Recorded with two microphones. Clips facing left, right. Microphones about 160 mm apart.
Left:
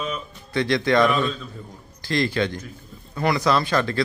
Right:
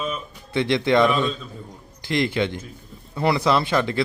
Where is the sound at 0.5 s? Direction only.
20° right (ahead or behind).